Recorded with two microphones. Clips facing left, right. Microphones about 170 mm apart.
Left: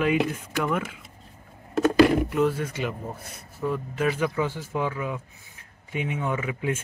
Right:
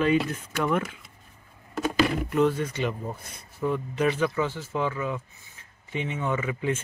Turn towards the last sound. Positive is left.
turn(degrees=10)  # may be behind; listen again after turning